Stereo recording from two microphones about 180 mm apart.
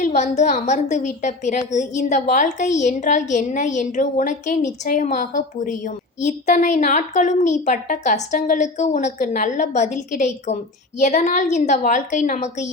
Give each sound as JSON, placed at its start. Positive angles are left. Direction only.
{"t": 0.0, "sound": "a woman's voice", "side_deg": 40}